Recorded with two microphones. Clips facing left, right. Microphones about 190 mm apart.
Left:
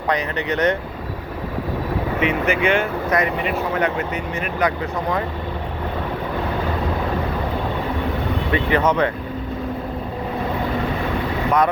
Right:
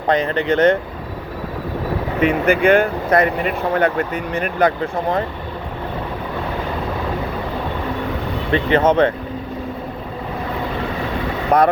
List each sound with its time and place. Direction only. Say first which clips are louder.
0.1 s speech: right 5 dB; 25° right (ahead or behind)
2.2 s speech: right 6 dB; 50° right (ahead or behind)
8.5 s speech: right 4 dB; 25° right (ahead or behind)
11.5 s speech: right 4 dB; 35° right (ahead or behind)